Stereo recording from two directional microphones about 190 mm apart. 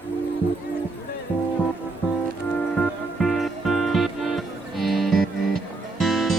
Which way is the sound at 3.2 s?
Centre (ahead or behind).